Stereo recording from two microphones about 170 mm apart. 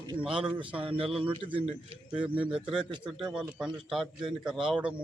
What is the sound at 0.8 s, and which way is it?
Speech, 35° right (ahead or behind).